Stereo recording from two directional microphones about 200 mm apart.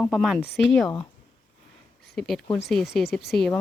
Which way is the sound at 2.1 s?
Centre (ahead or behind).